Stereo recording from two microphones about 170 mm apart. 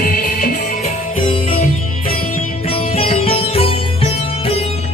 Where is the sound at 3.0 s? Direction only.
35° left (ahead or behind).